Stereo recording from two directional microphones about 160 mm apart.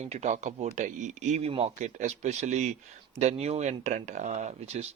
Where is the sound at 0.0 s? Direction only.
45° right (ahead or behind).